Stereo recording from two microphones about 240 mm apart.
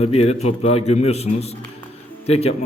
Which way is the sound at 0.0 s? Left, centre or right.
Left.